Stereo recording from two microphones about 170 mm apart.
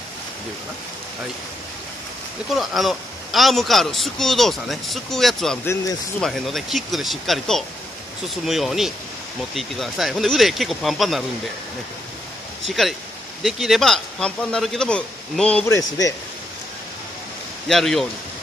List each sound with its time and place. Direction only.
2.5 s speech: centre (ahead or behind)
12.6 s speech: centre (ahead or behind)
15.7 s a man's voice: 20° left (ahead or behind)
17.6 s speech: centre (ahead or behind)